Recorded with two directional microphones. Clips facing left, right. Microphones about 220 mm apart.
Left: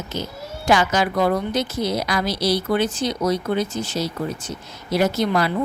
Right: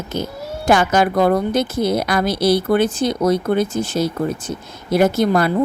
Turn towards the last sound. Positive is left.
turn(degrees=-50)  # may be behind; listen again after turning